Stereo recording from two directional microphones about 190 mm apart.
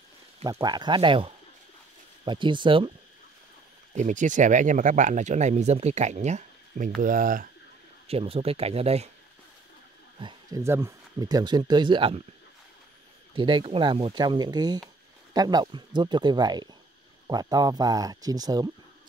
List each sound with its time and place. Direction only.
0.4 s speech: 20° right (ahead or behind)
3.9 s speech: 40° right (ahead or behind)
8.1 s speech: 30° right (ahead or behind)
10.1 s a sound: 25° right (ahead or behind)
10.6 s speech: 15° right (ahead or behind)
13.3 s speech: 25° right (ahead or behind)